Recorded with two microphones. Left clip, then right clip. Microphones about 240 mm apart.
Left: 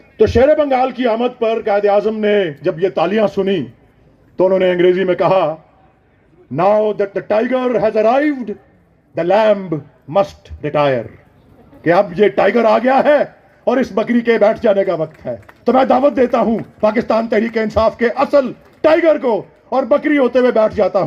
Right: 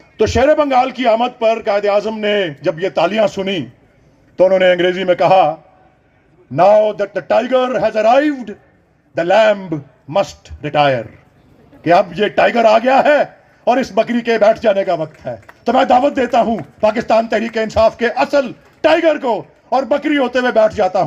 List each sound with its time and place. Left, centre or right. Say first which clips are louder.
0.2 s speech: left 1 dB; right